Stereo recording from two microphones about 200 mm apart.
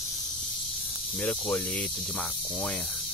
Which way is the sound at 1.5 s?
5° left (ahead or behind).